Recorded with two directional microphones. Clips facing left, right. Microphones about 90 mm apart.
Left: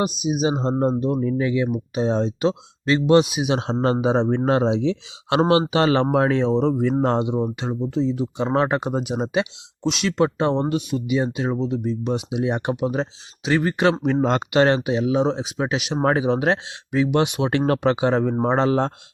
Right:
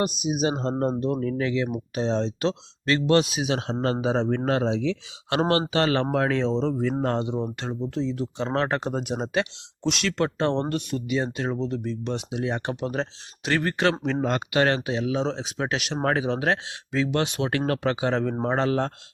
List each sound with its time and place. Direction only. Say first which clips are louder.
0.0 s speech: left 3 dB; centre (ahead or behind)
3.5 s speech: left 5 dB; 25° left (ahead or behind)
14.2 s speech: left 5 dB; 30° left (ahead or behind); by 16.0 s 10° left (ahead or behind)
16.0 s speech: left 4 dB; 20° left (ahead or behind)